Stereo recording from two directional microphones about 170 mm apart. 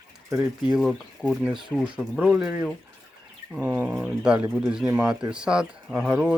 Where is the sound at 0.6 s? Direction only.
Centre (ahead or behind).